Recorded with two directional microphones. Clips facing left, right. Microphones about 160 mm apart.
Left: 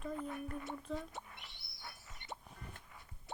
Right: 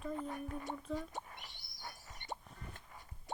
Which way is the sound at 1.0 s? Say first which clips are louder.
Right 2 dB; 45° right (ahead or behind).